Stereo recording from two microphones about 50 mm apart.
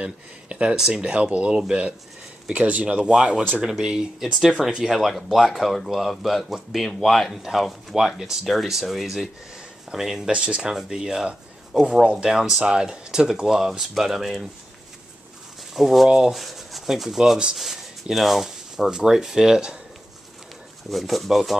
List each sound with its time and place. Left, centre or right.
0.0 s speech: right
12.0 s speech: centre
12.3 s speech: centre
15.7 s speech: centre
20.9 s speech: centre